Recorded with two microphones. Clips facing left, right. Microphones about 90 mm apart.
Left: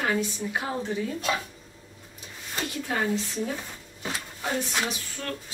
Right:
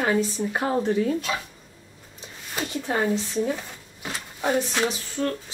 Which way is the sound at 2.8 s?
30° right (ahead or behind).